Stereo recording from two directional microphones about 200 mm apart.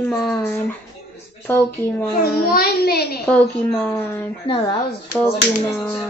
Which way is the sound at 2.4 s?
50° left (ahead or behind).